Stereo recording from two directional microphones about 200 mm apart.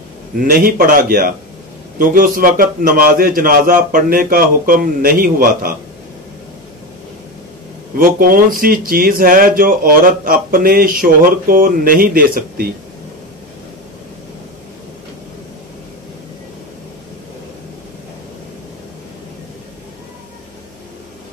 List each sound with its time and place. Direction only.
0.4 s speech: 45° right (ahead or behind)
8.0 s speech: 45° right (ahead or behind)